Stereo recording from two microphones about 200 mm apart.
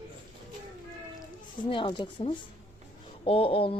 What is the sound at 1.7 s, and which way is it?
Speech, 25° left (ahead or behind).